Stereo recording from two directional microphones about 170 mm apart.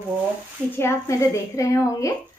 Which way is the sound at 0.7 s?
15° left (ahead or behind).